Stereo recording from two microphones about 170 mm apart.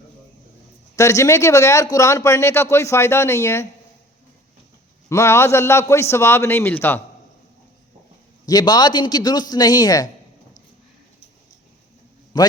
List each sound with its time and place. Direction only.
0.9 s speech: 20° left (ahead or behind)
5.0 s speech: 15° left (ahead or behind)
8.4 s speech: 25° left (ahead or behind)
12.3 s speech: 25° left (ahead or behind)